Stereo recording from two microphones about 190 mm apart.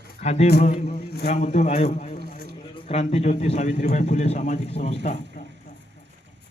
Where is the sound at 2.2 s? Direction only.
50° left (ahead or behind).